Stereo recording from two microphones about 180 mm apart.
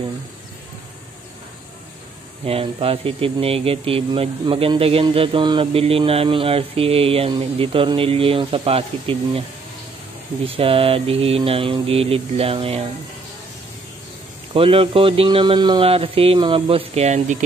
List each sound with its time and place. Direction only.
2.4 s speech: 30° right (ahead or behind)
10.4 s speech: 30° right (ahead or behind)
14.5 s speech: 30° right (ahead or behind)